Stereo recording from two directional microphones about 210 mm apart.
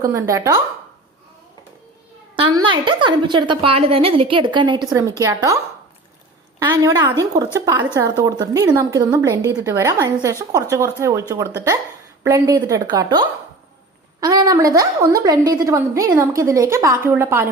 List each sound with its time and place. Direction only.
0.0 s a woman's voice: 15° right (ahead or behind)
2.4 s a woman's voice: 20° right (ahead or behind)
6.6 s a woman's voice: 15° right (ahead or behind)